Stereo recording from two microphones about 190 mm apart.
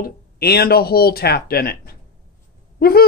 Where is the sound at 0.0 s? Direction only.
55° left (ahead or behind).